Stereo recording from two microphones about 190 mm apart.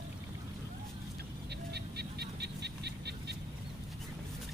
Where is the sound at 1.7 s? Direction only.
60° right (ahead or behind).